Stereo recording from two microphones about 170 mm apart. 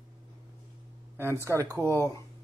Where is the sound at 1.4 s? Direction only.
20° right (ahead or behind).